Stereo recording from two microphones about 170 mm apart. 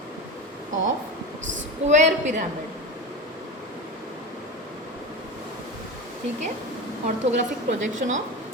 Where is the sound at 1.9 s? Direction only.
45° right (ahead or behind).